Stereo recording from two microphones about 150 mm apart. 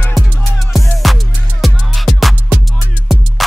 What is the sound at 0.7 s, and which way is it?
Music, centre (ahead or behind).